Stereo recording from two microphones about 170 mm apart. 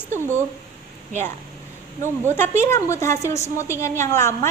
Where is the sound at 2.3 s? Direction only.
15° left (ahead or behind).